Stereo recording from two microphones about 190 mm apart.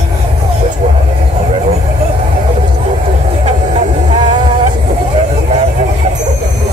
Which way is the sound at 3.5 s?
35° right (ahead or behind).